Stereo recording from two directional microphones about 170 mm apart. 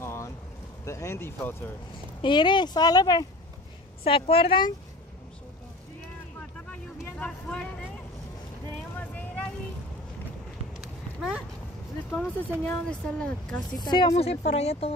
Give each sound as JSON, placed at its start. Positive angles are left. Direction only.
{"t": 0.0, "sound": "boat", "side_deg": 15}
{"t": 0.8, "sound": "speech", "side_deg": 15}
{"t": 2.2, "sound": "speech", "side_deg": 25}
{"t": 4.0, "sound": "speech", "side_deg": 35}
{"t": 6.7, "sound": "vehicle", "side_deg": 10}
{"t": 8.9, "sound": "a sound", "side_deg": 10}
{"t": 10.8, "sound": "clip-clop", "side_deg": -5}
{"t": 12.1, "sound": "speech", "side_deg": 10}
{"t": 13.7, "sound": "speech", "side_deg": 25}
{"t": 14.0, "sound": "speech", "side_deg": 40}